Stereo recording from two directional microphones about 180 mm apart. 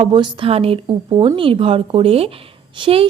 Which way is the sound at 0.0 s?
25° right (ahead or behind).